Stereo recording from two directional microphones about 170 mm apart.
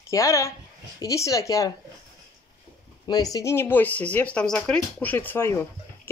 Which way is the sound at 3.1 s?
20° left (ahead or behind).